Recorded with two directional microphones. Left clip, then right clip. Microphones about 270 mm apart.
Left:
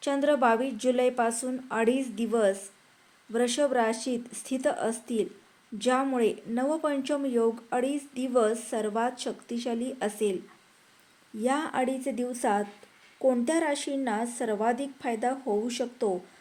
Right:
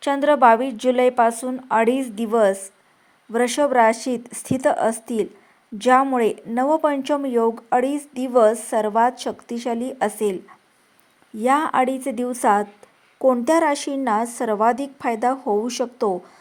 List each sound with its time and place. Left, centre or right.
0.0 s a woman's voice: centre
11.3 s speech: centre